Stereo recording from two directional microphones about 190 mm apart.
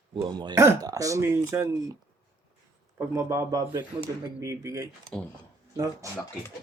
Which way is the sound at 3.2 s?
15° right (ahead or behind).